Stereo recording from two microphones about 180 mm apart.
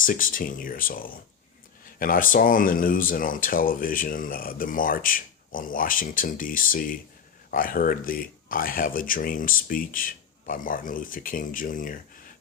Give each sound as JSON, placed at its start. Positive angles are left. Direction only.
{"t": 0.0, "sound": "speech", "side_deg": 50}